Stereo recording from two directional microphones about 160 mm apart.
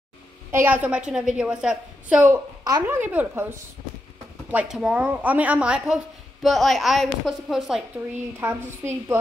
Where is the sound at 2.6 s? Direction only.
25° right (ahead or behind).